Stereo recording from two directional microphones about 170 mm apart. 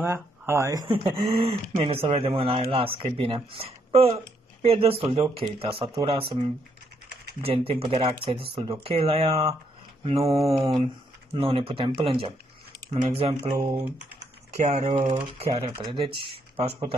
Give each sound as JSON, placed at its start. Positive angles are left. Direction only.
{"t": 0.0, "sound": "speech", "side_deg": -15}
{"t": 0.8, "sound": "speech", "side_deg": -30}
{"t": 7.4, "sound": "speech", "side_deg": -35}
{"t": 13.4, "sound": "speech", "side_deg": -20}
{"t": 14.5, "sound": "speech", "side_deg": -45}